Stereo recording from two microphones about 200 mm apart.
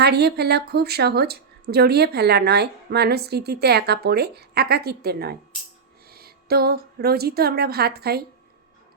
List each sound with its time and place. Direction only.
0.0 s a woman's voice: 55° right (ahead or behind)